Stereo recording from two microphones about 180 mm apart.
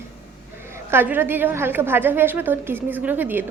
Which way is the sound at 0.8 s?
10° right (ahead or behind).